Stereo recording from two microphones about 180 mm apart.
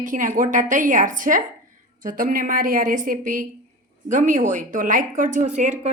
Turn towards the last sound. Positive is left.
turn(degrees=-40)  # may be behind; listen again after turning